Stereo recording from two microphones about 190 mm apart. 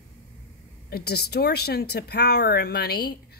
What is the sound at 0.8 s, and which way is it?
Speech, 55° left (ahead or behind).